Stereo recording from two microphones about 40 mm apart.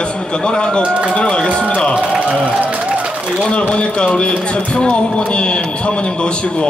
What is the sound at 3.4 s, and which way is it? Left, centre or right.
A man's voice, left.